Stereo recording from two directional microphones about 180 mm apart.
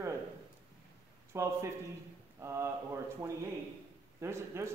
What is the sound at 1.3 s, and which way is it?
Speech, 15° right (ahead or behind).